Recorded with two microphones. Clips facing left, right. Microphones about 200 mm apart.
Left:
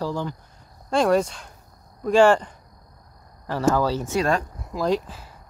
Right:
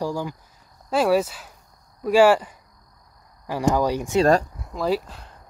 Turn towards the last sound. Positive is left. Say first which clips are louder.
# even
turn(degrees=5)  # may be behind; listen again after turning